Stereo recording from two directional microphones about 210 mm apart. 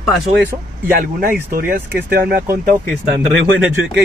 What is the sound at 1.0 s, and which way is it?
Speech, 45° right (ahead or behind).